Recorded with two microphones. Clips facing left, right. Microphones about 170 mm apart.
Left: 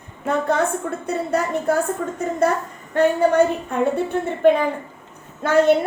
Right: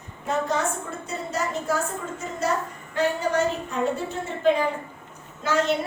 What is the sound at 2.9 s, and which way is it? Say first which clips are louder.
A woman's voice: left 7 dB; 55° left (ahead or behind).